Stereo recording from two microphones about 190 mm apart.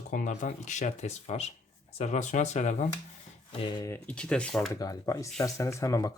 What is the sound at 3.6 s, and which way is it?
Speech, 20° left (ahead or behind).